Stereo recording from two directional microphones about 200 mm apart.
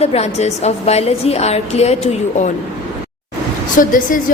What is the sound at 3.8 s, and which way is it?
Speech, 45° left (ahead or behind).